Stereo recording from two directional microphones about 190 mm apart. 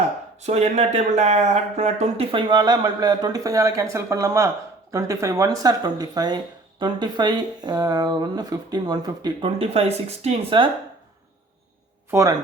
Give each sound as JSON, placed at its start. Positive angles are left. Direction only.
{"t": 0.4, "sound": "speech", "side_deg": -35}